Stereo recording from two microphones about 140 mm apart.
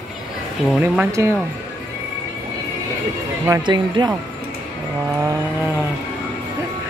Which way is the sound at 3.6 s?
30° right (ahead or behind).